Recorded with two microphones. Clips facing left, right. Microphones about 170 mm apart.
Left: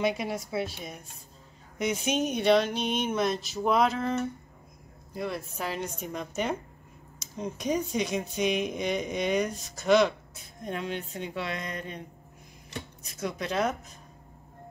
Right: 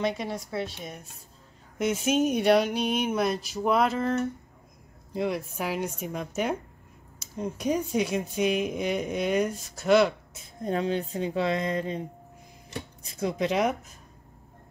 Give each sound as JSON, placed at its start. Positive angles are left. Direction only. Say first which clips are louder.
{"t": 0.0, "sound": "speech", "louder": "even", "side_deg": 10}
{"t": 5.1, "sound": "speech", "louder": "right 5 dB", "side_deg": -15}
{"t": 10.3, "sound": "speech", "louder": "right 6 dB", "side_deg": -30}
{"t": 13.0, "sound": "speech", "louder": "right 6 dB", "side_deg": -25}